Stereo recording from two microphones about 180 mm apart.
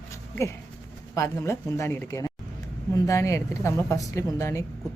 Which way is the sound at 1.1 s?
15° left (ahead or behind).